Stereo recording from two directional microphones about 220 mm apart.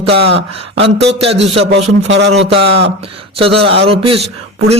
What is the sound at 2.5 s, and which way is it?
A man's voice, 25° right (ahead or behind).